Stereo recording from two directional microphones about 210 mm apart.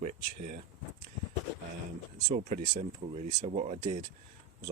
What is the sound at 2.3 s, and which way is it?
Speech, 35° right (ahead or behind).